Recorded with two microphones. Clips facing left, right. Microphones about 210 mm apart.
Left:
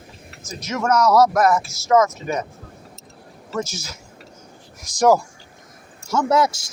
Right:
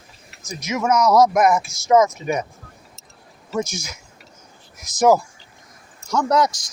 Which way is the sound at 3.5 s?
15° right (ahead or behind).